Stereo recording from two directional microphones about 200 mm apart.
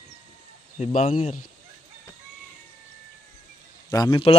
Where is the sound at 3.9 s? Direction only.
20° left (ahead or behind).